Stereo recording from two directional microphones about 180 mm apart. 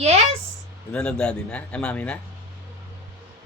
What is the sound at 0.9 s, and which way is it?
Speech, 5° left (ahead or behind).